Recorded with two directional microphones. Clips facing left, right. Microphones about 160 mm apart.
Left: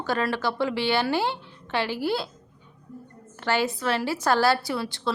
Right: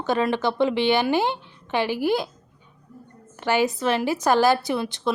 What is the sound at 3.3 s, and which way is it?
A woman's voice, 15° right (ahead or behind).